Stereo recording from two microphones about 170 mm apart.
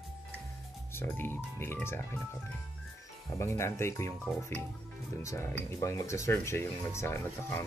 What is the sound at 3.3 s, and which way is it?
Speech, 15° left (ahead or behind).